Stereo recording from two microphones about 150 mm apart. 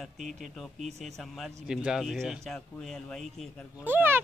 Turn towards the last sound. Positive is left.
turn(degrees=-15)  # may be behind; listen again after turning